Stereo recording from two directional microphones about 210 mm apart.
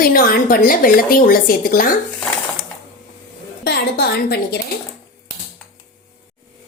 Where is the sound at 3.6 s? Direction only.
50° left (ahead or behind).